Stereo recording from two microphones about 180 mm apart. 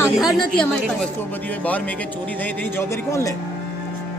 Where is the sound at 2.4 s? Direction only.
15° left (ahead or behind).